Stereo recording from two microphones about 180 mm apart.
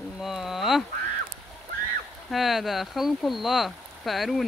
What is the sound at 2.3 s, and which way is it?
Speech, centre (ahead or behind).